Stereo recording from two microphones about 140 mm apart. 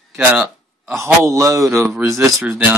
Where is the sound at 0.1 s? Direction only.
10° right (ahead or behind).